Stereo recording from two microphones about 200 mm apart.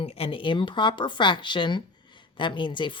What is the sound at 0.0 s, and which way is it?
Speech, 30° left (ahead or behind).